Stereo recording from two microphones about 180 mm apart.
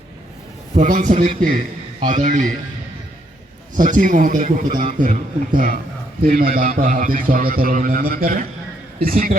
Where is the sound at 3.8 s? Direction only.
45° right (ahead or behind).